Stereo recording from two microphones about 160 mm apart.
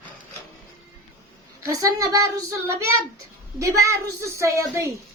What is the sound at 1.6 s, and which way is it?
A woman's voice, 20° right (ahead or behind).